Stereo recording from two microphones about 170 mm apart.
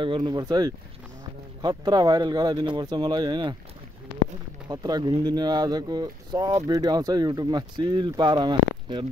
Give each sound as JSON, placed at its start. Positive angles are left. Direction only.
{"t": 0.0, "sound": "speech", "side_deg": -25}
{"t": 4.6, "sound": "speech", "side_deg": -25}